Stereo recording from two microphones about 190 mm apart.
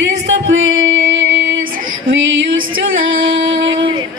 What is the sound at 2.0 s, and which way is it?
Female singing, 90° right.